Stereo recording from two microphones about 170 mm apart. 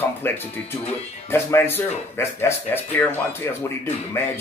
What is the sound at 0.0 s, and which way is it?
Speech, 15° left (ahead or behind).